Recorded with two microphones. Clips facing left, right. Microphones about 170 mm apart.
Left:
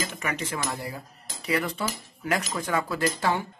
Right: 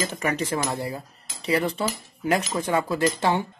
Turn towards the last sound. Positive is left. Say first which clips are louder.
# right 3 dB
turn(degrees=-20)  # may be behind; listen again after turning